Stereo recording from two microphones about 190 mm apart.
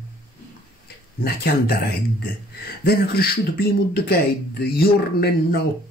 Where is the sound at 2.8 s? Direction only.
55° left (ahead or behind).